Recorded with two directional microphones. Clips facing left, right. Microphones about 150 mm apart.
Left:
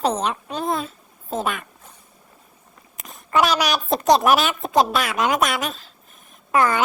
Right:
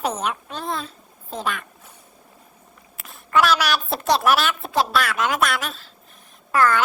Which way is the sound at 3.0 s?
Centre (ahead or behind).